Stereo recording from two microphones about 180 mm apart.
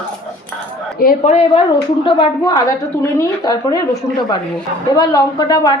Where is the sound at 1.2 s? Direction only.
40° left (ahead or behind).